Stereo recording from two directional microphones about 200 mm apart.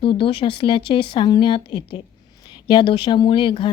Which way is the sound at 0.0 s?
25° left (ahead or behind).